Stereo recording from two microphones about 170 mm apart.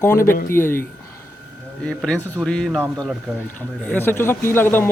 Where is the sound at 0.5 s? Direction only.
15° left (ahead or behind).